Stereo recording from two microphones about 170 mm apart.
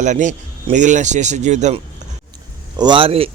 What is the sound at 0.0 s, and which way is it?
Speech, 45° right (ahead or behind).